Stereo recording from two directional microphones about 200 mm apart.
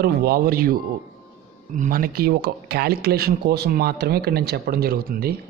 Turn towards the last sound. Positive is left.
turn(degrees=-50)  # may be behind; listen again after turning